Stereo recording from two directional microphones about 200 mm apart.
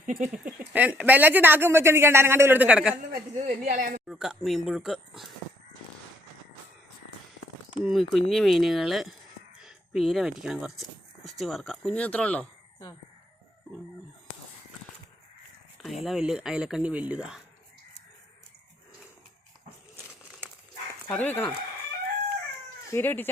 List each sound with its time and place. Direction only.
0.0 s speech: 40° right (ahead or behind)
0.3 s speech: 5° right (ahead or behind)
3.1 s a woman's voice: 40° right (ahead or behind)
4.0 s speech: centre (ahead or behind)
7.9 s speech: centre (ahead or behind)
16.0 s speech: centre (ahead or behind)
21.1 s speech: 10° left (ahead or behind)
22.9 s speech: 10° left (ahead or behind)